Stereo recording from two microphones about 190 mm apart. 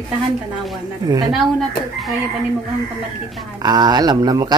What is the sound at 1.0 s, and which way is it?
Speech, 20° right (ahead or behind).